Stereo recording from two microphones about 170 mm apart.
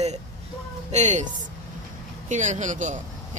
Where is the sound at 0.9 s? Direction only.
45° right (ahead or behind).